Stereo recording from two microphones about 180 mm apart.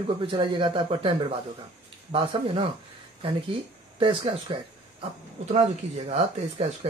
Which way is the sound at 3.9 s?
30° right (ahead or behind).